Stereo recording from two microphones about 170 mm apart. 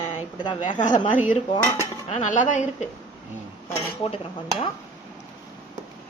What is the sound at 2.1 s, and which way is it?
Speech, 45° left (ahead or behind).